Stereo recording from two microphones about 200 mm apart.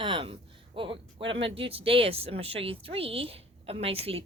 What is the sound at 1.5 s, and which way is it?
A woman's voice, 25° right (ahead or behind).